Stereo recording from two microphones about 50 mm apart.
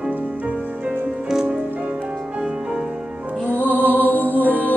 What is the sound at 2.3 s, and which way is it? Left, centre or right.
Music, centre.